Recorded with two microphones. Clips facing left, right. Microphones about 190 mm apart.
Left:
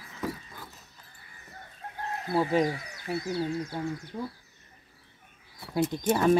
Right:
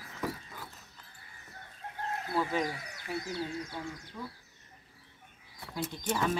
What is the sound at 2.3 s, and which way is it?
Speech, 35° left (ahead or behind).